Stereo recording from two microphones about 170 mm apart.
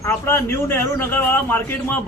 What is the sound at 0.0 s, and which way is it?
A man's voice, 15° left (ahead or behind).